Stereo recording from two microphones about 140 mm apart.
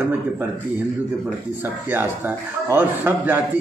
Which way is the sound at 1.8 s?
15° right (ahead or behind).